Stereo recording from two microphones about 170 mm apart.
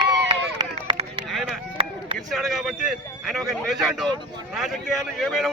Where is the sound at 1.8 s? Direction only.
30° right (ahead or behind).